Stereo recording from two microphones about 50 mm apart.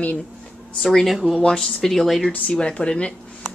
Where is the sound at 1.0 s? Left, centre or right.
Centre.